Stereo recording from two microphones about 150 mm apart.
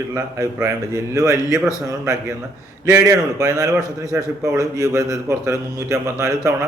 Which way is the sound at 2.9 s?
20° right (ahead or behind).